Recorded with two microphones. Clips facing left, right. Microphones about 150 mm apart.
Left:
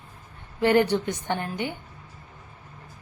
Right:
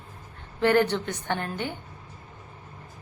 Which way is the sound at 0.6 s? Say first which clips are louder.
Left 1 dB; 15° left (ahead or behind).